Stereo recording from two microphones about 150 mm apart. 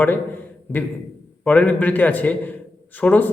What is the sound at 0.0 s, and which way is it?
A man's voice, 10° left (ahead or behind).